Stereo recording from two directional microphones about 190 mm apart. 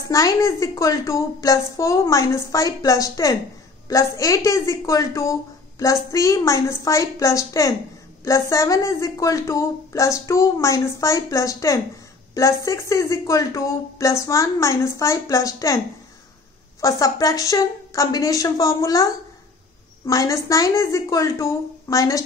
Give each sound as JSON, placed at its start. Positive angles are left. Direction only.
{"t": 0.1, "sound": "a woman's voice", "side_deg": 15}
{"t": 16.8, "sound": "a woman's voice", "side_deg": 15}
{"t": 20.1, "sound": "a woman's voice", "side_deg": 15}